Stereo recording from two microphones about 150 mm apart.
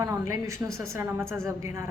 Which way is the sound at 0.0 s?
20° right (ahead or behind).